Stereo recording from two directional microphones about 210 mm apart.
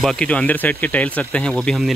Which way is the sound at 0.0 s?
5° left (ahead or behind).